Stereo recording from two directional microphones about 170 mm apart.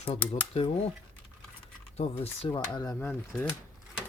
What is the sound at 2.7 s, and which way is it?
Speech, 20° left (ahead or behind).